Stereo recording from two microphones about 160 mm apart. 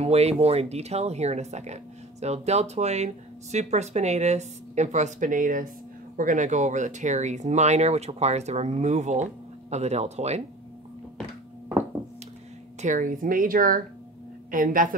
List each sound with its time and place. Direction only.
0.0 s speech: 40° right (ahead or behind)
12.8 s a woman's voice: 55° right (ahead or behind)